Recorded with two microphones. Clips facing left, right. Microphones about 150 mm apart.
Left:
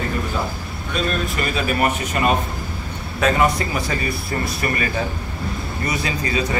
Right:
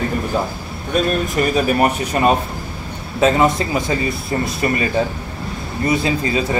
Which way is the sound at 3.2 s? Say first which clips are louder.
Right 4 dB; 25° right (ahead or behind).